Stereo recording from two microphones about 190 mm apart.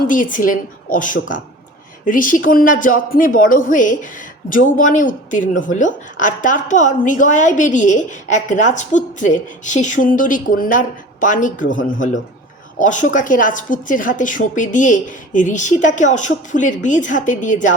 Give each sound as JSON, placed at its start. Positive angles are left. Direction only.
{"t": 0.1, "sound": "speech", "side_deg": 45}